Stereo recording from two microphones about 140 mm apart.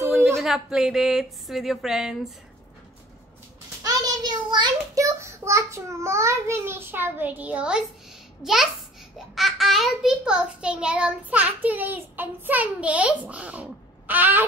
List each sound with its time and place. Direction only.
0.0 s a sound: 15° right (ahead or behind)
0.4 s speech: 5° right (ahead or behind)
3.8 s a child's voice: 30° right (ahead or behind)